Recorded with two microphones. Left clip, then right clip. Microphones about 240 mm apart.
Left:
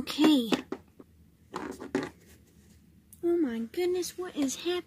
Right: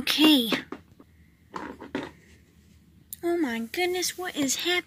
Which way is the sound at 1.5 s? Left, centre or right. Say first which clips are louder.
Right 1 dB; left.